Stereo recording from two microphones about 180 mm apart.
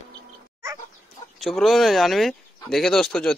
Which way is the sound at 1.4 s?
Centre (ahead or behind).